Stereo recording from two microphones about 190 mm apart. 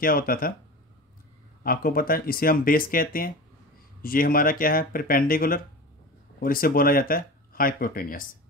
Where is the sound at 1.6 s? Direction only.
50° left (ahead or behind).